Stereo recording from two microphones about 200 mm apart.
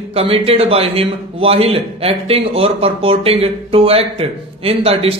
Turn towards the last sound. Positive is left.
turn(degrees=-30)  # may be behind; listen again after turning